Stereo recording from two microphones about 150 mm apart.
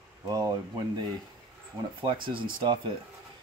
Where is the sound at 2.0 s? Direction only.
35° right (ahead or behind).